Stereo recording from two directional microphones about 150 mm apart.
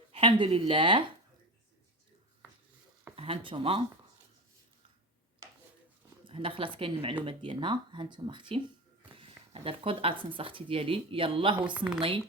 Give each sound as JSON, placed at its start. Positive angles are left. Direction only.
{"t": 0.1, "sound": "speech", "side_deg": -40}
{"t": 3.2, "sound": "speech", "side_deg": -35}
{"t": 6.2, "sound": "speech", "side_deg": -35}